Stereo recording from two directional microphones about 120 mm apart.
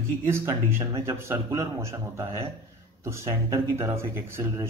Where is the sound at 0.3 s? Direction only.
20° right (ahead or behind).